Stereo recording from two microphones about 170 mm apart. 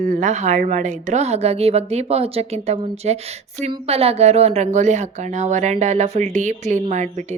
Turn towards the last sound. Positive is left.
turn(degrees=-45)  # may be behind; listen again after turning